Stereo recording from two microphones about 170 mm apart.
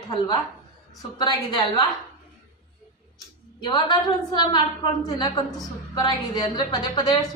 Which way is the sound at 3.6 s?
25° left (ahead or behind).